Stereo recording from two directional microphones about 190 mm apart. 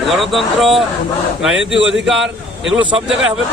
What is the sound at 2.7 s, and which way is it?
Speech, 25° right (ahead or behind).